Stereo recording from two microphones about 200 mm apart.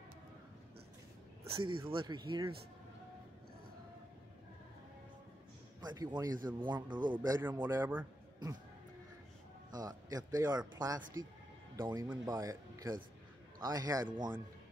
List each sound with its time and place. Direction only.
1.7 s a man's voice: 25° right (ahead or behind)
5.8 s a man's voice: 20° right (ahead or behind)
7.6 s speech: 10° right (ahead or behind)
9.7 s a man's voice: 20° right (ahead or behind)